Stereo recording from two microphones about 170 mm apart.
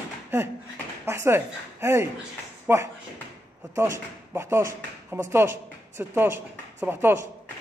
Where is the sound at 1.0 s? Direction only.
15° right (ahead or behind).